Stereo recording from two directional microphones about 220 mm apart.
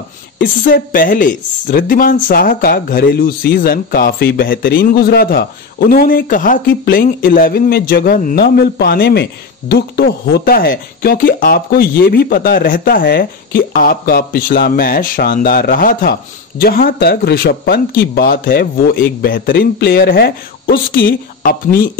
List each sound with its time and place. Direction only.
0.4 s speech: 40° left (ahead or behind)